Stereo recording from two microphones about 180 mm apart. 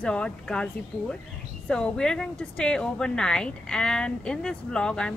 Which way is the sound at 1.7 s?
5° left (ahead or behind).